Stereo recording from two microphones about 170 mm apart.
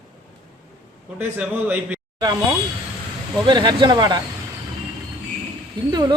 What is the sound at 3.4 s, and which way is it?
Speech, 25° right (ahead or behind).